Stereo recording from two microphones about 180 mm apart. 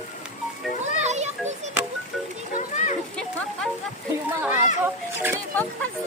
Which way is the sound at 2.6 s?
40° left (ahead or behind).